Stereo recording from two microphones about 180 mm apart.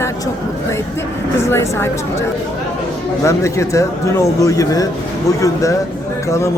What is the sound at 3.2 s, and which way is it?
Speech, 15° left (ahead or behind).